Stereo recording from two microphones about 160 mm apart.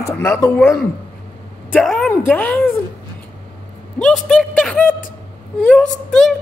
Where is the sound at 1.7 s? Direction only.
5° left (ahead or behind).